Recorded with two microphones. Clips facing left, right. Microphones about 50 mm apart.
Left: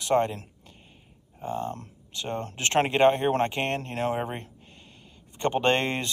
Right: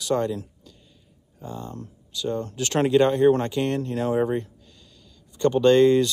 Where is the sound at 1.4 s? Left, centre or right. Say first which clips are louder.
Left 4 dB; left.